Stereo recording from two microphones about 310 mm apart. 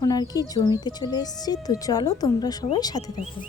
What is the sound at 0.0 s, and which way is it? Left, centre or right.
Speech, centre.